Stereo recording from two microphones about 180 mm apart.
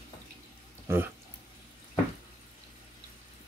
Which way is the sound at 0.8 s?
10° right (ahead or behind).